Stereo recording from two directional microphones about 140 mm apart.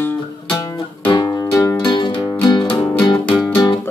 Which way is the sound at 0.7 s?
35° left (ahead or behind).